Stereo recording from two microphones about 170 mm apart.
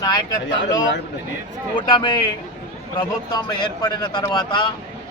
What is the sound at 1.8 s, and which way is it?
A man's voice, 25° left (ahead or behind).